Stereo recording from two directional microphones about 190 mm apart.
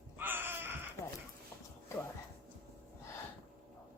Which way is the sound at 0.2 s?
10° right (ahead or behind).